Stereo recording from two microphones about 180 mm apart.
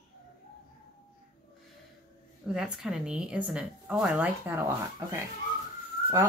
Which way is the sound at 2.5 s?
5° right (ahead or behind).